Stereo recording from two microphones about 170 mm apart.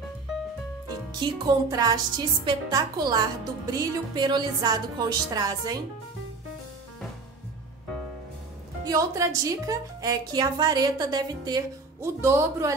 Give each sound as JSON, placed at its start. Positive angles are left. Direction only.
{"t": 1.2, "sound": "a woman's voice", "side_deg": -25}
{"t": 8.8, "sound": "a woman's voice", "side_deg": -20}